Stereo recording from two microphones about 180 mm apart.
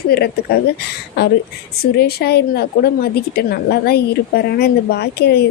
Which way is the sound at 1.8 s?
60° left (ahead or behind).